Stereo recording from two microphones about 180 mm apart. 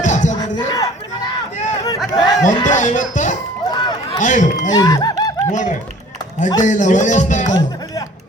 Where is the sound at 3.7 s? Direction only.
25° left (ahead or behind).